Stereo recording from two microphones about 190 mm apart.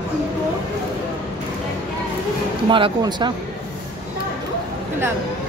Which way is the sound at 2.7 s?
25° right (ahead or behind).